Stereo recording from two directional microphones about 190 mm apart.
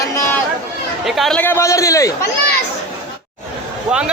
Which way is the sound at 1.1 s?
Centre (ahead or behind).